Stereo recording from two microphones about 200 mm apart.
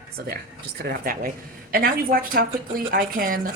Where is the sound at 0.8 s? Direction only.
45° right (ahead or behind).